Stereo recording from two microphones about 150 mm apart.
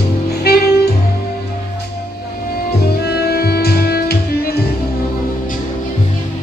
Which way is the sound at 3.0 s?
90° left.